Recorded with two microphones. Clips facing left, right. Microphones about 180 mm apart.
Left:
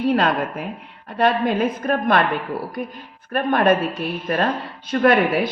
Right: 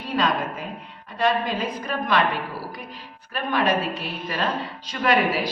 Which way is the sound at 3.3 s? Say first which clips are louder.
Left 6 dB; 55° left (ahead or behind).